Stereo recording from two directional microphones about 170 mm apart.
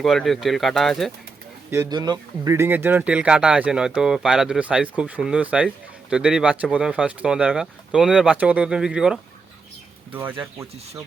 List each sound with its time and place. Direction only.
0.0 s speech: centre (ahead or behind)
1.7 s speech: 20° right (ahead or behind)